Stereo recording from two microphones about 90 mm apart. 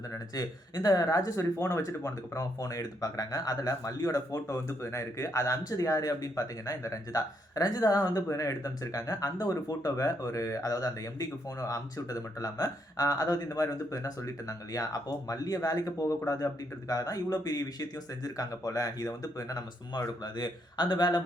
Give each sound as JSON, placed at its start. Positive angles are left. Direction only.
{"t": 0.1, "sound": "speech", "side_deg": 45}